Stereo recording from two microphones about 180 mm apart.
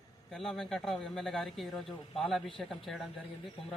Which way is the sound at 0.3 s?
Centre (ahead or behind).